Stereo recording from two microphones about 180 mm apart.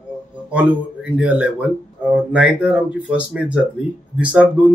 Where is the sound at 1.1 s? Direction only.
5° right (ahead or behind).